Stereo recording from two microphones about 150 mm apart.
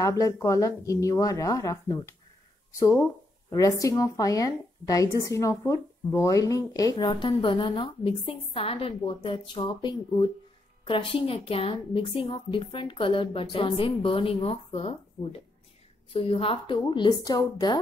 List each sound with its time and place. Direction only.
0.0 s speech: 20° left (ahead or behind); by 15.0 s 40° left (ahead or behind)
16.1 s speech: 40° left (ahead or behind)